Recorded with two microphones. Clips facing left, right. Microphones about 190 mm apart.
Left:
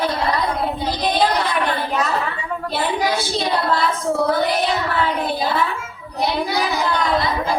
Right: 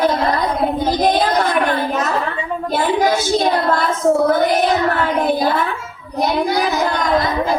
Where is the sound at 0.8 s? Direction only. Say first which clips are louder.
Right 3 dB; 45° right (ahead or behind).